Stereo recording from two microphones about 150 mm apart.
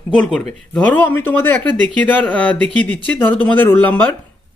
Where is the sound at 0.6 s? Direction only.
10° left (ahead or behind).